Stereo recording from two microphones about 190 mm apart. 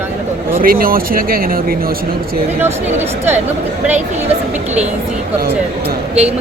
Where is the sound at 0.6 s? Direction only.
50° right (ahead or behind).